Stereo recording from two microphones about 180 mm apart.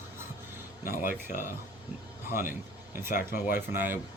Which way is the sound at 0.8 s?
55° left (ahead or behind).